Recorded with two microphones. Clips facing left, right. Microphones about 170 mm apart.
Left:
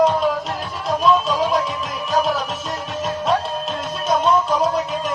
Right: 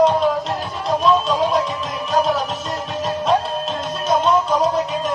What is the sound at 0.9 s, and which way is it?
Music, centre (ahead or behind).